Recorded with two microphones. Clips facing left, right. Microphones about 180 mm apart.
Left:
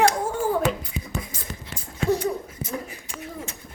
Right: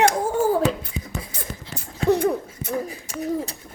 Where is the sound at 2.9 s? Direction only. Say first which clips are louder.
Right 11 dB; 40° right (ahead or behind).